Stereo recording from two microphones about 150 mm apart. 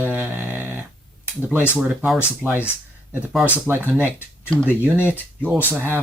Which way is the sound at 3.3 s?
5° right (ahead or behind).